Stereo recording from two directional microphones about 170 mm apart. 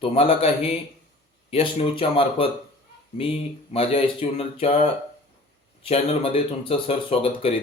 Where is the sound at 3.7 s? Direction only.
35° left (ahead or behind).